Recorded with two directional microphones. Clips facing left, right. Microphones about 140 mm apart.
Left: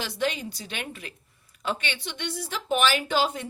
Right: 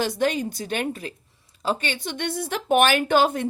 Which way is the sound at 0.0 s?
45° right (ahead or behind).